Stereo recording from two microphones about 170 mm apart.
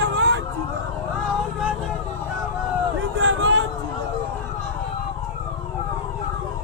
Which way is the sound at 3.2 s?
90° right.